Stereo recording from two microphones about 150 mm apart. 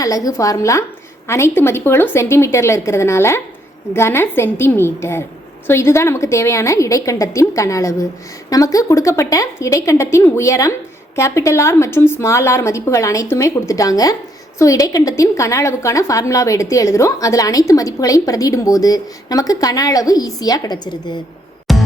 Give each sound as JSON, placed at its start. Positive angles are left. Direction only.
{"t": 0.3, "sound": "a woman's voice", "side_deg": 20}
{"t": 21.7, "sound": "music", "side_deg": 0}